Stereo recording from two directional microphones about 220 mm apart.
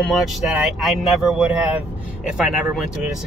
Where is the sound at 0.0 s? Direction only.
Centre (ahead or behind).